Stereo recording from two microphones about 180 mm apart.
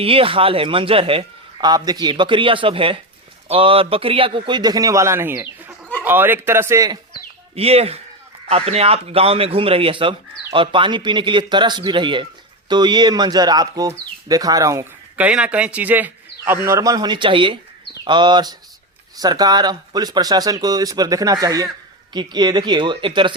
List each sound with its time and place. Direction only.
0.0 s a man's voice: 30° right (ahead or behind)
7.5 s a man's voice: 35° right (ahead or behind)